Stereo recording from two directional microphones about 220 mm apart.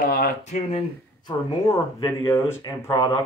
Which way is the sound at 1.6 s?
15° left (ahead or behind).